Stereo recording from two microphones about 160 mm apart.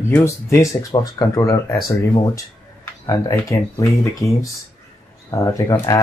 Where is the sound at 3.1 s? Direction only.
20° left (ahead or behind).